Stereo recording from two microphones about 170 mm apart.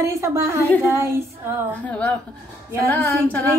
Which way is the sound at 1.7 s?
10° left (ahead or behind).